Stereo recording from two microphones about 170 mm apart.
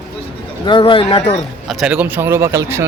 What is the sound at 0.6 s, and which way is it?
Speech, 30° left (ahead or behind).